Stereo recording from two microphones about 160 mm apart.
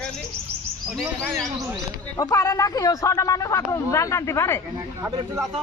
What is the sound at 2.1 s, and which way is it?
Speech, 20° left (ahead or behind).